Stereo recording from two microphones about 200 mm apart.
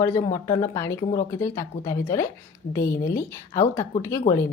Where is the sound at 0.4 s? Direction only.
20° left (ahead or behind).